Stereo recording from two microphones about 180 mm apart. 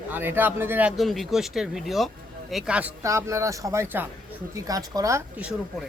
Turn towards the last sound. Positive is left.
turn(degrees=-20)  # may be behind; listen again after turning